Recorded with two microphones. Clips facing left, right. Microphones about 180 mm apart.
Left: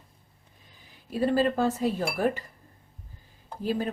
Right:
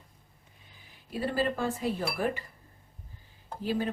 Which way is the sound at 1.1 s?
40° left (ahead or behind).